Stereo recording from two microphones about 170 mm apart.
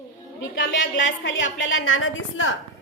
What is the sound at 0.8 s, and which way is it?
Speech, 90° left.